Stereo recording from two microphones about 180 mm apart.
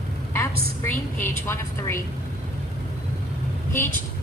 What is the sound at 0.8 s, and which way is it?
A woman's voice, 10° left (ahead or behind).